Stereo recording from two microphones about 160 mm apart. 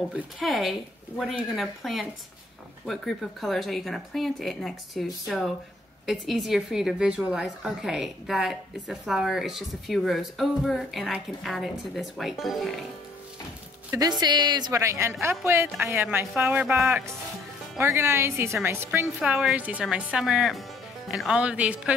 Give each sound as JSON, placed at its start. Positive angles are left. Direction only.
{"t": 0.1, "sound": "a woman's voice", "side_deg": 0}
{"t": 13.8, "sound": "a woman's voice", "side_deg": -25}
{"t": 19.1, "sound": "a woman's voice", "side_deg": 0}